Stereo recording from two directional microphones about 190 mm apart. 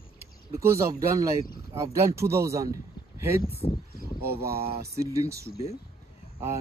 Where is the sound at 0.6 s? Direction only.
15° right (ahead or behind).